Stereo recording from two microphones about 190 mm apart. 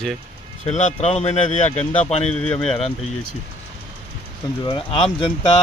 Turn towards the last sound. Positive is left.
turn(degrees=25)  # may be behind; listen again after turning